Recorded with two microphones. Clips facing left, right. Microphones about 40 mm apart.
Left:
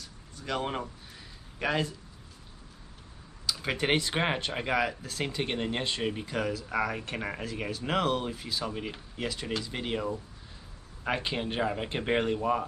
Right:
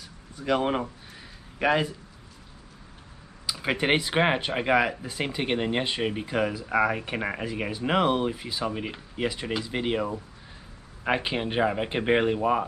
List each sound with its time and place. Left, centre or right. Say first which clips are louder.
0.0 s a sound: right 7 dB; centre
1.6 s speech: right 6 dB; centre
3.4 s speech: right 4 dB; centre